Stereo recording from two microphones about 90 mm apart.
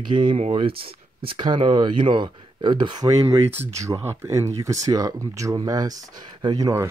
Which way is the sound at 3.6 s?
35° right (ahead or behind).